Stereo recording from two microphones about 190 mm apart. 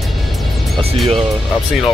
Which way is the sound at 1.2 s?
Centre (ahead or behind).